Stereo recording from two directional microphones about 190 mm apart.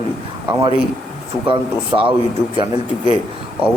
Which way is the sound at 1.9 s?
20° right (ahead or behind).